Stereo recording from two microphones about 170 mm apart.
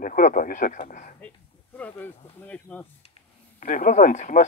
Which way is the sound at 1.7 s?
10° left (ahead or behind).